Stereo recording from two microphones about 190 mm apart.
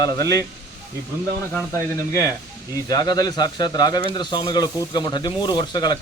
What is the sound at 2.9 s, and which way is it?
Speech, 20° left (ahead or behind).